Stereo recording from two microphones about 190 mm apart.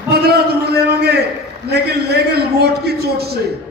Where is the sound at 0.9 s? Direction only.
60° right (ahead or behind).